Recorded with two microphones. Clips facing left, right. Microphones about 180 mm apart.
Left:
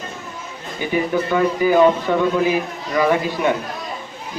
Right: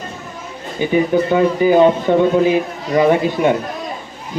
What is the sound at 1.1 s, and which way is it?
A man's voice, 25° right (ahead or behind).